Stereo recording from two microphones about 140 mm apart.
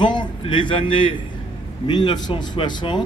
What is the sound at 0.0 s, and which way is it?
A man's voice, 35° left (ahead or behind).